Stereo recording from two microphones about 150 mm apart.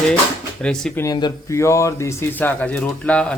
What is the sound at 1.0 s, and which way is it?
Speech, 25° left (ahead or behind).